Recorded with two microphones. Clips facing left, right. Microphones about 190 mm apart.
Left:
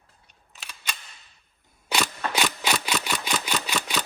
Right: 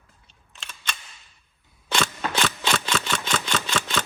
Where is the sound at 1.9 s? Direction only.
10° left (ahead or behind).